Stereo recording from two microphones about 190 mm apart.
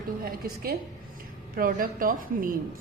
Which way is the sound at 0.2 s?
50° right (ahead or behind).